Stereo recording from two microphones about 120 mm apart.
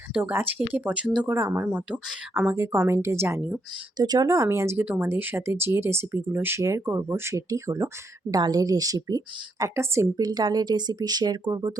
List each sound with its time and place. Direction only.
0.1 s speech: 15° right (ahead or behind)
1.3 s speech: 20° right (ahead or behind)
3.9 s speech: 35° right (ahead or behind)
10.2 s speech: 35° right (ahead or behind)